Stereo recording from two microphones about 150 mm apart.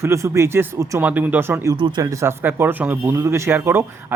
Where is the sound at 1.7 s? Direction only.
30° right (ahead or behind).